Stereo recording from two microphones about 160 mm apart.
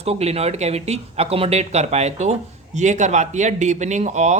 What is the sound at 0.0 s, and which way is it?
Speech, 40° right (ahead or behind).